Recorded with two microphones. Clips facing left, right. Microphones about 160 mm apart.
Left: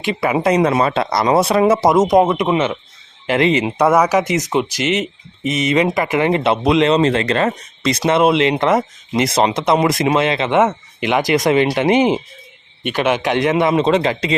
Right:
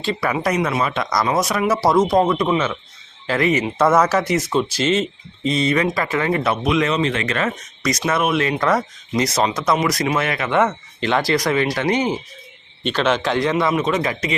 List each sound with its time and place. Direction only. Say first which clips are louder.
0.0 s speech: left 4 dB; 20° left (ahead or behind)
3.8 s speech: left 2 dB; 15° left (ahead or behind)